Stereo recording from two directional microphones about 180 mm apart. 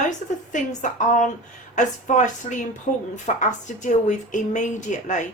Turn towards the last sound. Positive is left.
turn(degrees=45)  # may be behind; listen again after turning